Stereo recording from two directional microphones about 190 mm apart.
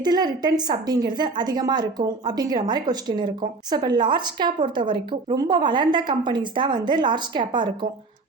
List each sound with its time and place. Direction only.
0.0 s a woman's voice: 20° right (ahead or behind)